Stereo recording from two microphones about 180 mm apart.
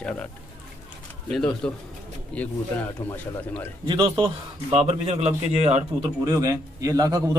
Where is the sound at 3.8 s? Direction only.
25° right (ahead or behind).